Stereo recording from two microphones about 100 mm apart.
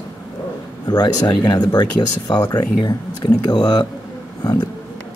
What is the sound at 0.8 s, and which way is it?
Speech, 40° left (ahead or behind).